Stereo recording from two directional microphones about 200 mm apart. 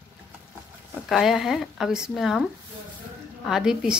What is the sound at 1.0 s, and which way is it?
Speech, centre (ahead or behind).